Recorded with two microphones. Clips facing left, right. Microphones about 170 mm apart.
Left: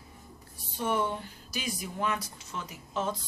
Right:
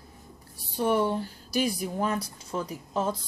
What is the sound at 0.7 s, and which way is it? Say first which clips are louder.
Speech: right 5 dB; 35° right (ahead or behind).